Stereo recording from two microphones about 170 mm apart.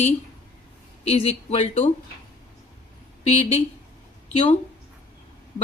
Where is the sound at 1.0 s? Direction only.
35° left (ahead or behind).